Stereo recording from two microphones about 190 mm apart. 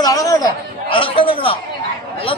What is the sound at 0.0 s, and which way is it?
Chatter, 20° left (ahead or behind).